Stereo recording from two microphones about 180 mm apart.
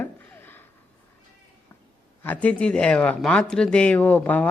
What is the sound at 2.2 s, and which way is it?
Speech, 10° left (ahead or behind).